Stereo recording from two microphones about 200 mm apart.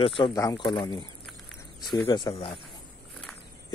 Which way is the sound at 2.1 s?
20° left (ahead or behind).